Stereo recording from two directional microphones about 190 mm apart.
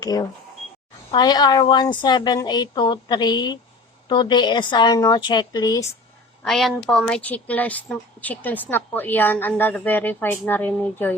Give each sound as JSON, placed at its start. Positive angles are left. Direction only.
{"t": 0.0, "sound": "a woman's voice", "side_deg": 20}
{"t": 6.4, "sound": "speech", "side_deg": 0}